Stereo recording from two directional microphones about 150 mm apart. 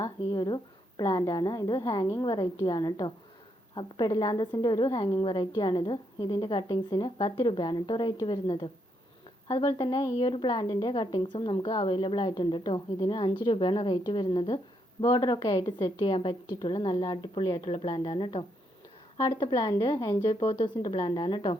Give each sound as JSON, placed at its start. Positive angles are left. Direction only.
{"t": 0.3, "sound": "a woman's voice", "side_deg": 30}